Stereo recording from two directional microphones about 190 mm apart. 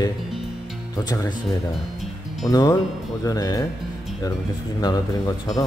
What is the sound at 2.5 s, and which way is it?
Speech, 20° left (ahead or behind).